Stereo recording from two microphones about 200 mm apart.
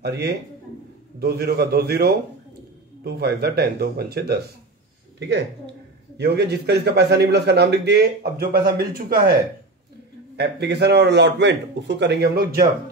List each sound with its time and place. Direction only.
0.0 s a man's voice: 55° right (ahead or behind)
10.3 s a man's voice: 55° right (ahead or behind)